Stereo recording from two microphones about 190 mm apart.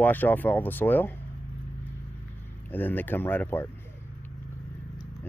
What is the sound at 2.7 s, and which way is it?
Speech, 10° left (ahead or behind).